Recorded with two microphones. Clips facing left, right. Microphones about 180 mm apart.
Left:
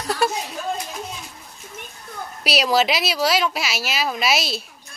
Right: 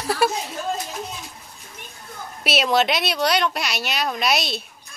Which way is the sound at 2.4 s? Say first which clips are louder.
Even; centre (ahead or behind).